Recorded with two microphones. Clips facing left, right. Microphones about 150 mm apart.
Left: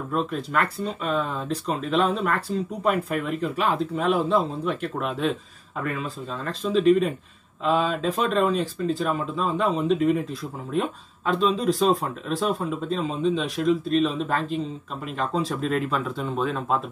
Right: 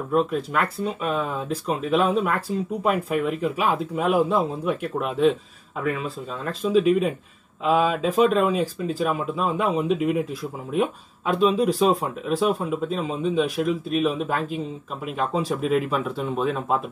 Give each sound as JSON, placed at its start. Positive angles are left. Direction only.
{"t": 0.1, "sound": "speech", "side_deg": -5}
{"t": 11.3, "sound": "speech", "side_deg": -5}